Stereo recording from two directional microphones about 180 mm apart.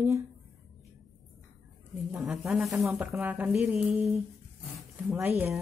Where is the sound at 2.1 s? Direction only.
5° right (ahead or behind).